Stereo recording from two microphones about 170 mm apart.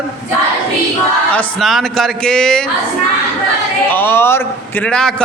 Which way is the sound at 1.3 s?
Centre (ahead or behind).